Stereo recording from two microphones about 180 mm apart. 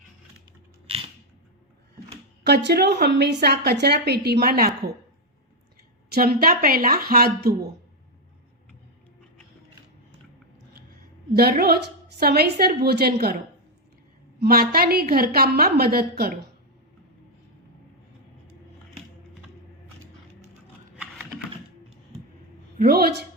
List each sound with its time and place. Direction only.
0.9 s a sound: 30° right (ahead or behind)
2.4 s speech: 65° right (ahead or behind)
6.1 s speech: 55° right (ahead or behind)
11.3 s speech: 60° right (ahead or behind)
14.3 s speech: 60° right (ahead or behind)
21.0 s typing: 5° right (ahead or behind)
22.8 s speech: 60° right (ahead or behind)